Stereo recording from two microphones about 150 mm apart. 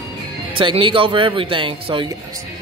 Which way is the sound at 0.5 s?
35° right (ahead or behind).